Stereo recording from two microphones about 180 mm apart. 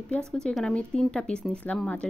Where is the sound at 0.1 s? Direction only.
5° left (ahead or behind).